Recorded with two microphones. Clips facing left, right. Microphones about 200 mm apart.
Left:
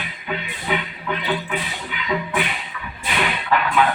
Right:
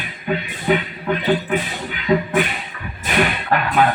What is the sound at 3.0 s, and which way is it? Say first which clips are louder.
Whip: right 3 dB; 45° right (ahead or behind).